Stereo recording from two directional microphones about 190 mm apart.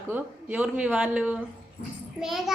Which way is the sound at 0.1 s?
10° right (ahead or behind).